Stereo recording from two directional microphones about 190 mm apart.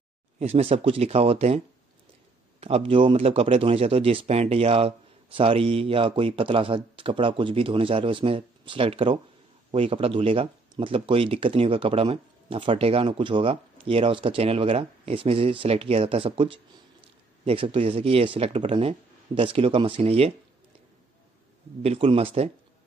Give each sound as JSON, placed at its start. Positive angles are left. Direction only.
{"t": 0.4, "sound": "speech", "side_deg": -30}
{"t": 2.6, "sound": "speech", "side_deg": -30}
{"t": 21.8, "sound": "speech", "side_deg": -30}